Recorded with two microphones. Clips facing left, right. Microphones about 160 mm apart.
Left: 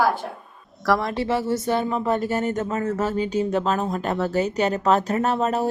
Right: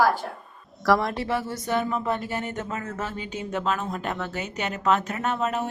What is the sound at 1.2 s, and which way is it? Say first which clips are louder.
Speech: left 5 dB; 30° left (ahead or behind).